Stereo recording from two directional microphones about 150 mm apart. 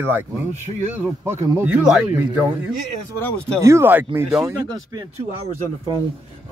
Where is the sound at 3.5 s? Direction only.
20° right (ahead or behind).